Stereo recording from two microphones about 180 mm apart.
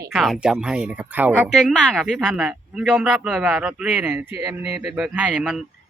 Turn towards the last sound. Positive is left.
turn(degrees=-5)  # may be behind; listen again after turning